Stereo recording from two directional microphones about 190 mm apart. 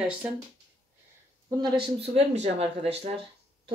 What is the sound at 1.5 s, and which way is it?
Speech, 25° right (ahead or behind).